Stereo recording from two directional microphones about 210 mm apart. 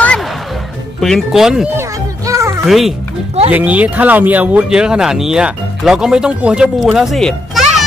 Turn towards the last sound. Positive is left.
turn(degrees=0)  # may be behind; listen again after turning